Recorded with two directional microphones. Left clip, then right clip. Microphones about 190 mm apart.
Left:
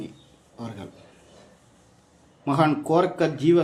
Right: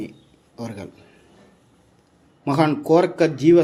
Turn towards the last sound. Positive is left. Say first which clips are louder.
# right 5 dB
turn(degrees=-25)  # may be behind; listen again after turning